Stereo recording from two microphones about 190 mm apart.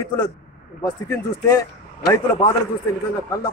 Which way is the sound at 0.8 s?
15° left (ahead or behind).